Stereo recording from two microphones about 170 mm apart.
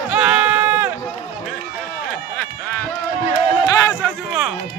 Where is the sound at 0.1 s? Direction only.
10° right (ahead or behind).